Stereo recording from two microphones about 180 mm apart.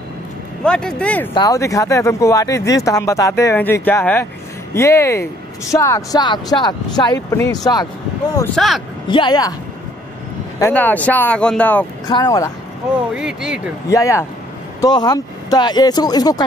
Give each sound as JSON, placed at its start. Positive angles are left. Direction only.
{"t": 0.7, "sound": "speech", "side_deg": 5}
{"t": 1.3, "sound": "speech", "side_deg": 20}
{"t": 8.5, "sound": "speech", "side_deg": 0}
{"t": 9.1, "sound": "speech", "side_deg": 25}
{"t": 10.6, "sound": "speech", "side_deg": 10}
{"t": 12.1, "sound": "speech", "side_deg": 20}
{"t": 13.1, "sound": "speech", "side_deg": -5}
{"t": 13.8, "sound": "speech", "side_deg": 15}